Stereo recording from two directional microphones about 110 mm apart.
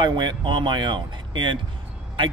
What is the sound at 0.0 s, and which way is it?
Speech, 40° right (ahead or behind).